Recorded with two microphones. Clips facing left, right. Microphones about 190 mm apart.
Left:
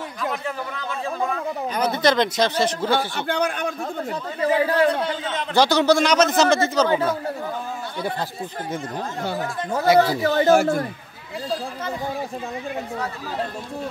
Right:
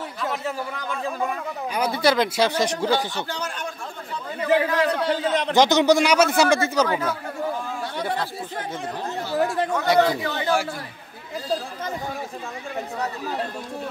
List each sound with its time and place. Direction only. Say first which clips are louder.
1.8 s a man's voice: left 1 dB; 10° right (ahead or behind)
3.2 s a man's voice: left 6 dB; 60° left (ahead or behind)
4.1 s a man's voice: right 1 dB; 35° left (ahead or behind)
5.5 s a man's voice: even; 15° right (ahead or behind)
9.9 s speech: left 2 dB; 40° left (ahead or behind)